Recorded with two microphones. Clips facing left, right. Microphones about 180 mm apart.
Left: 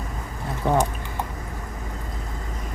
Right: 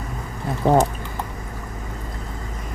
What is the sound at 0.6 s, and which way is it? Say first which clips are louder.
Speech: right 5 dB; 25° right (ahead or behind).